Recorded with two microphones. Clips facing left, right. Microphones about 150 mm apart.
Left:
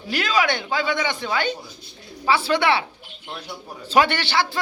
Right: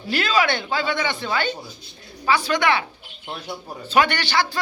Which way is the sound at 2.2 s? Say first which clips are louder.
Left 1 dB; 30° left (ahead or behind).